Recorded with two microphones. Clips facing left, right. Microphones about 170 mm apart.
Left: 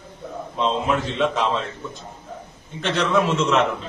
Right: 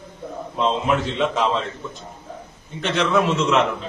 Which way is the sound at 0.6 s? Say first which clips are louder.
Right 1 dB; centre (ahead or behind).